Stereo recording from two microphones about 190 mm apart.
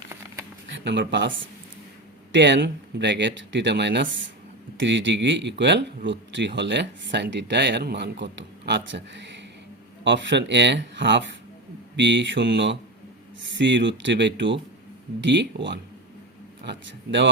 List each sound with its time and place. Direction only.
0.7 s speech: 70° right (ahead or behind)
2.3 s speech: 65° right (ahead or behind)